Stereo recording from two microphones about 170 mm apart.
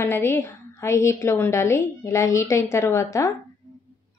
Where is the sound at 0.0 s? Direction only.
15° left (ahead or behind).